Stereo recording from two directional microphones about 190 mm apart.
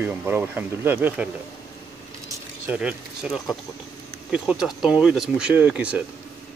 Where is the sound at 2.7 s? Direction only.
5° right (ahead or behind).